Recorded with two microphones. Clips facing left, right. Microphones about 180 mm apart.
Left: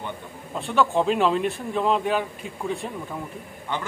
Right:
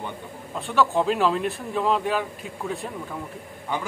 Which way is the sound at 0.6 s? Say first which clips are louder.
Even; centre (ahead or behind).